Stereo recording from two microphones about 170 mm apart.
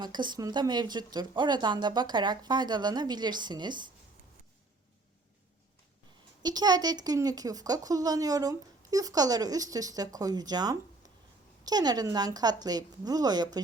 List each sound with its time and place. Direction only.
0.0 s speech: 25° right (ahead or behind)
6.4 s speech: 25° right (ahead or behind)